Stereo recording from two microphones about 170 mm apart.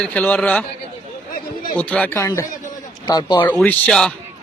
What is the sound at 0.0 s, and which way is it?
Speech, 10° left (ahead or behind).